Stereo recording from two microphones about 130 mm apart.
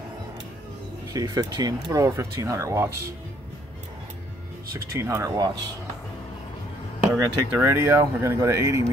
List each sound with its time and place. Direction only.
1.1 s speech: 30° right (ahead or behind)
4.7 s speech: 25° right (ahead or behind)
7.2 s speech: 20° right (ahead or behind)